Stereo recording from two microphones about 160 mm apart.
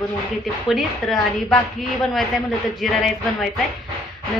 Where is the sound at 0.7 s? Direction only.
Centre (ahead or behind).